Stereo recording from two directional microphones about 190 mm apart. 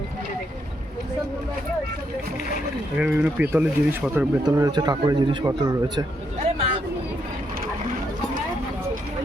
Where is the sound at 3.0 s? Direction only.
5° right (ahead or behind).